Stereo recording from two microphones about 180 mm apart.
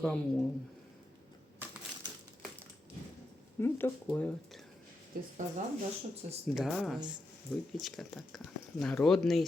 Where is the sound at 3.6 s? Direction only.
10° left (ahead or behind).